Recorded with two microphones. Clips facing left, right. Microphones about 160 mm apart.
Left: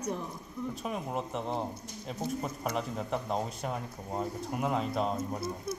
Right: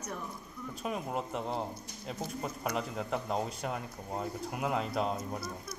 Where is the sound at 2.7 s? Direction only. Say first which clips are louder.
Left 1 dB; centre (ahead or behind).